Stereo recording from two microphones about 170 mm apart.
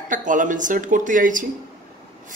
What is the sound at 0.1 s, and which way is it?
Speech, 50° right (ahead or behind).